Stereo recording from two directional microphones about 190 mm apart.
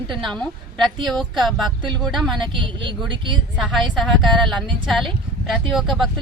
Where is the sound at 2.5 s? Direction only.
25° right (ahead or behind).